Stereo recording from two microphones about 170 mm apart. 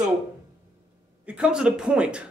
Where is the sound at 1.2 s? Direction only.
5° right (ahead or behind).